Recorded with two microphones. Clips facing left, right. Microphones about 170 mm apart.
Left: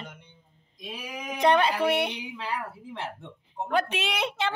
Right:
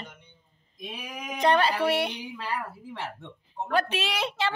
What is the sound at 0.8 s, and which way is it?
Speech, 5° left (ahead or behind).